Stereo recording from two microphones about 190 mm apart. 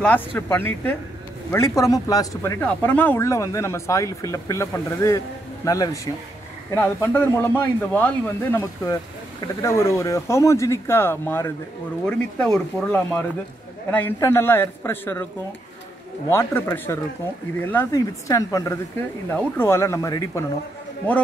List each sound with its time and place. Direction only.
0.0 s speech: 10° left (ahead or behind)
6.7 s speech: 15° left (ahead or behind)
16.3 s speech: 10° left (ahead or behind)